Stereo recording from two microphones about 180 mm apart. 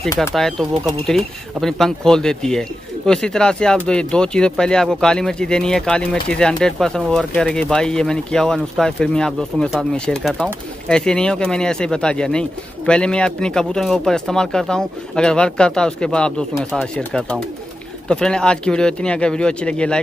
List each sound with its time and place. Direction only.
0.3 s speech: centre (ahead or behind)